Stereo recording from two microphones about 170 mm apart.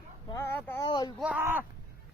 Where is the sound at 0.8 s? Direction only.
25° left (ahead or behind).